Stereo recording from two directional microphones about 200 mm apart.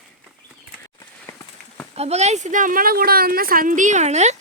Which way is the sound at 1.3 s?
15° left (ahead or behind).